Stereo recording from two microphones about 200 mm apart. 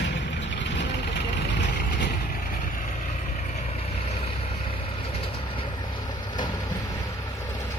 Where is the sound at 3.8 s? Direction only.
30° left (ahead or behind).